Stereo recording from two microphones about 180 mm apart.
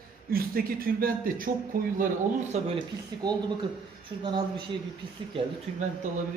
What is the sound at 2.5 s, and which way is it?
Speech, 40° right (ahead or behind).